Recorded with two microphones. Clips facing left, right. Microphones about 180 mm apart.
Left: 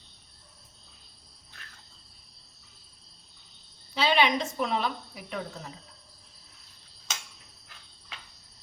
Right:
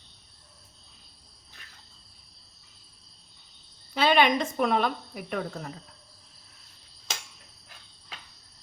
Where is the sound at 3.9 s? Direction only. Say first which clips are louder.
Right 3 dB; 50° right (ahead or behind).